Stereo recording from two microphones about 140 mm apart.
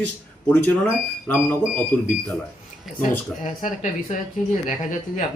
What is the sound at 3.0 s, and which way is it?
Speech, 65° left (ahead or behind).